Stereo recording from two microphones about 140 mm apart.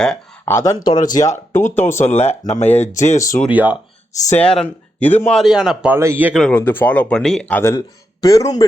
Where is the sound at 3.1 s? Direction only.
25° left (ahead or behind).